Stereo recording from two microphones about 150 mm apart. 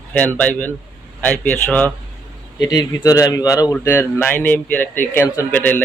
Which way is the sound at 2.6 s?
25° left (ahead or behind).